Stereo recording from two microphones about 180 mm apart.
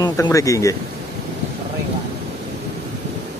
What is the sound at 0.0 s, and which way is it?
Speech, 20° left (ahead or behind).